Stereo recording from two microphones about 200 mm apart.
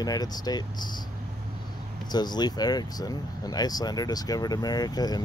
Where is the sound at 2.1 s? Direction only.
20° left (ahead or behind).